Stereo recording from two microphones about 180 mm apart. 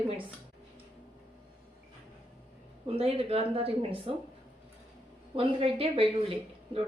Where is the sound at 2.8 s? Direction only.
30° right (ahead or behind).